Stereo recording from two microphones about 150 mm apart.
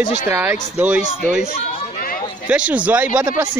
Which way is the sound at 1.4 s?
40° left (ahead or behind).